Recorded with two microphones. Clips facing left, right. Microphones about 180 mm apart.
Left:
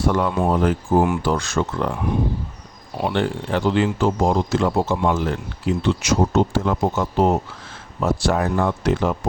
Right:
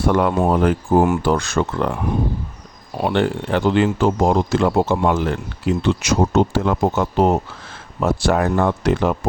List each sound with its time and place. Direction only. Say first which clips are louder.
0.0 s speech: right 3 dB; 60° right (ahead or behind)
1.0 s speech: right 3 dB; 50° right (ahead or behind)
3.0 s speech: right 3 dB; 65° right (ahead or behind)